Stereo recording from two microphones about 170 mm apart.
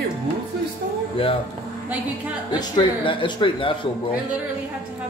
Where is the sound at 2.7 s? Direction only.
30° left (ahead or behind).